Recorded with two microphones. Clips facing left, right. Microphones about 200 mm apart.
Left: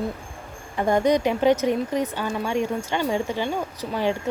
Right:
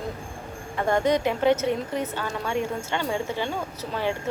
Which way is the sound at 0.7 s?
15° left (ahead or behind).